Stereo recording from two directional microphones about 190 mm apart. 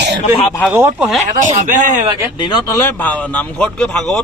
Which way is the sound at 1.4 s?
40° right (ahead or behind).